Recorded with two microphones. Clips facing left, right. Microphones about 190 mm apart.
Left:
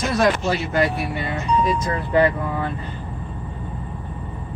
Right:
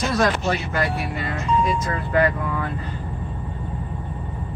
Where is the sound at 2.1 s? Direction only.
30° left (ahead or behind).